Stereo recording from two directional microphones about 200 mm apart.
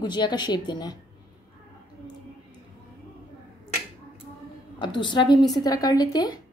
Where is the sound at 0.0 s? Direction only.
20° left (ahead or behind).